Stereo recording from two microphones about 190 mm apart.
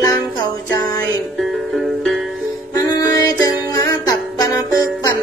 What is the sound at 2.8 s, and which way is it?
Music, 20° left (ahead or behind).